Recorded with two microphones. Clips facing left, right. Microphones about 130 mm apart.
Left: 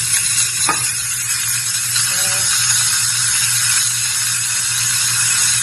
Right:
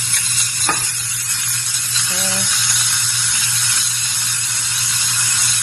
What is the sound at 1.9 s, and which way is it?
Frying, 15° right (ahead or behind).